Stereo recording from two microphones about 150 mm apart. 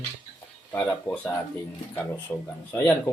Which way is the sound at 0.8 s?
10° left (ahead or behind).